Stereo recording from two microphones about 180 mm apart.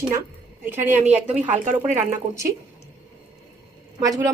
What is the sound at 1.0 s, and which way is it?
Speech, 40° right (ahead or behind).